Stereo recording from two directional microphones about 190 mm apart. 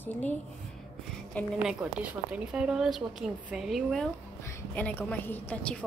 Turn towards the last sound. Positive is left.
turn(degrees=10)  # may be behind; listen again after turning